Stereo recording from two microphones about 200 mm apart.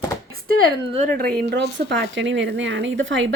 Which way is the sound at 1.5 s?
60° right (ahead or behind).